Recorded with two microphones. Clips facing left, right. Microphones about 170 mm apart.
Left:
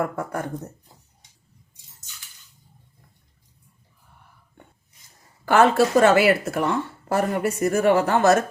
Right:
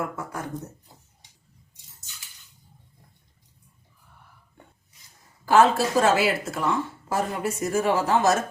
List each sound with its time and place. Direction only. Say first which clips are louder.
0.2 s speech: left 5 dB; 60° left (ahead or behind)
5.5 s speech: left 2 dB; 65° left (ahead or behind)